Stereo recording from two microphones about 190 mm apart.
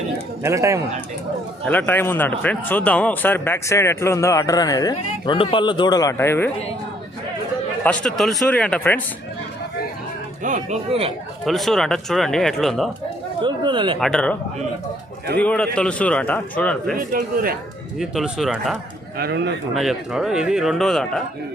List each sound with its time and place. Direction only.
0.4 s speech: 15° right (ahead or behind)
1.6 s a man's voice: 10° left (ahead or behind)
7.9 s speech: centre (ahead or behind)
10.4 s speech: 40° right (ahead or behind)
11.4 s speech: centre (ahead or behind)
13.4 s speech: 25° right (ahead or behind)
14.0 s speech: 5° left (ahead or behind)
15.4 s a man's voice: 5° left (ahead or behind)
16.9 s speech: 45° right (ahead or behind)
17.9 s speech: centre (ahead or behind)
19.1 s a man's voice: 55° right (ahead or behind)
19.7 s speech: centre (ahead or behind)